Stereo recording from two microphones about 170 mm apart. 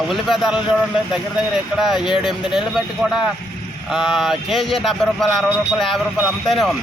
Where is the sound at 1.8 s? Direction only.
Centre (ahead or behind).